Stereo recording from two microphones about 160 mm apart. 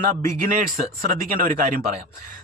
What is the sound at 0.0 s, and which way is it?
Speech, 60° right (ahead or behind).